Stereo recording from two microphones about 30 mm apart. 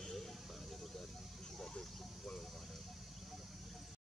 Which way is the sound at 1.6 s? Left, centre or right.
Left.